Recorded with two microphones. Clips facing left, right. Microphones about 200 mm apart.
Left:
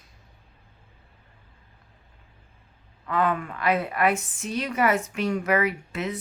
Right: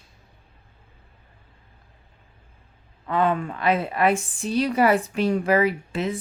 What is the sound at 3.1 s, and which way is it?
Speech, 25° right (ahead or behind).